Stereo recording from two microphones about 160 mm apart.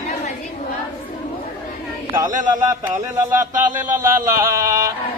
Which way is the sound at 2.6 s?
15° right (ahead or behind).